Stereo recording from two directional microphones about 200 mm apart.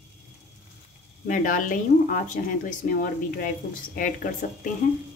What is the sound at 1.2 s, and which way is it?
Speech, 40° left (ahead or behind).